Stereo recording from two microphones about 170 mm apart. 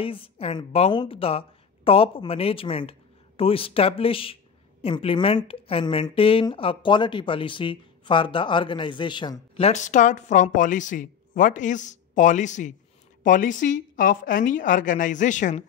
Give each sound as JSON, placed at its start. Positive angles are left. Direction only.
{"t": 0.0, "sound": "a woman's voice", "side_deg": 30}
{"t": 9.7, "sound": "speech", "side_deg": 45}